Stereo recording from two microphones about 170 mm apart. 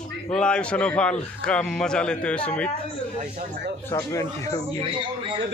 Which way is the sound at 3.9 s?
15° left (ahead or behind).